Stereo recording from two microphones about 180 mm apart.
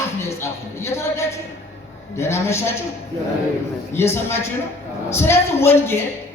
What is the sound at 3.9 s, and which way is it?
Speech, 15° left (ahead or behind).